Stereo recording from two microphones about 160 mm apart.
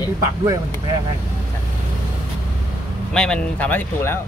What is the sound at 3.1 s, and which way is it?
Speech, 5° left (ahead or behind).